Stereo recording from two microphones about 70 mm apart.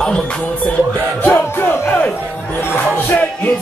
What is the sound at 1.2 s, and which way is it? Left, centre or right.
Music, left.